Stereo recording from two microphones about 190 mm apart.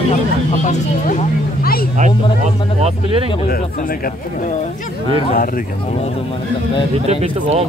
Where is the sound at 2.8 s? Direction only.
30° right (ahead or behind).